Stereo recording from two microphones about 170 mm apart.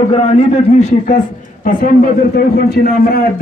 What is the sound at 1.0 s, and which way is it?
A man's voice, 50° left (ahead or behind).